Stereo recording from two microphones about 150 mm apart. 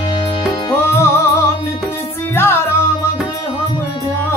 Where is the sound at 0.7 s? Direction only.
20° left (ahead or behind).